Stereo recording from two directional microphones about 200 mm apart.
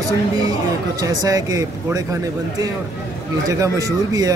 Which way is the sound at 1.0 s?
15° right (ahead or behind).